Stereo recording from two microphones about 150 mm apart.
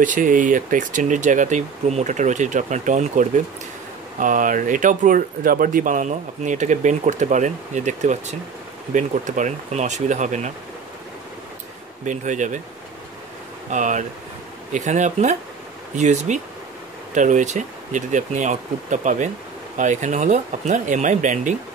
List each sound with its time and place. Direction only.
0.0 s speech: 60° right (ahead or behind)
12.0 s speech: 55° right (ahead or behind)
13.7 s speech: 55° right (ahead or behind)